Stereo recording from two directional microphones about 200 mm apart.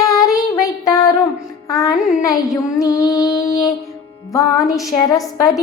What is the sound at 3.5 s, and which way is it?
Music, 20° left (ahead or behind).